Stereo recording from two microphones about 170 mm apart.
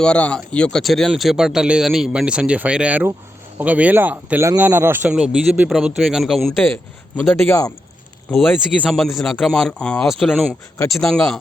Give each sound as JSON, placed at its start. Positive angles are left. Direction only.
{"t": 0.0, "sound": "speech", "side_deg": 5}
{"t": 7.2, "sound": "speech", "side_deg": 15}
{"t": 8.3, "sound": "speech", "side_deg": 5}